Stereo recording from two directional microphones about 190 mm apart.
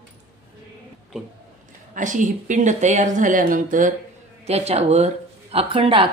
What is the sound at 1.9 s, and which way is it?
Speech, 40° right (ahead or behind).